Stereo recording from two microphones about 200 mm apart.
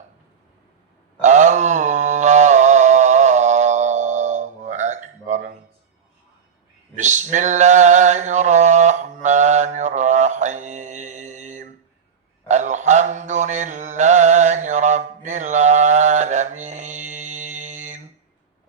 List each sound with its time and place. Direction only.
1.2 s mantra: 35° right (ahead or behind)
6.9 s male singing: 35° right (ahead or behind)
12.5 s mantra: 35° right (ahead or behind)